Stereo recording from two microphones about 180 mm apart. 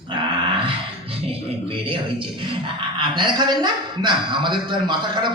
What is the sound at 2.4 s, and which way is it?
Speech, 25° right (ahead or behind).